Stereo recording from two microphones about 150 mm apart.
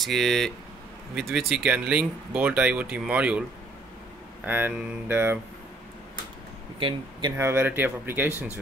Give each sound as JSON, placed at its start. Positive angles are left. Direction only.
{"t": 0.0, "sound": "speech", "side_deg": 0}
{"t": 1.5, "sound": "speech", "side_deg": -10}
{"t": 4.5, "sound": "speech", "side_deg": -15}
{"t": 6.8, "sound": "speech", "side_deg": -30}
{"t": 7.3, "sound": "speech", "side_deg": -15}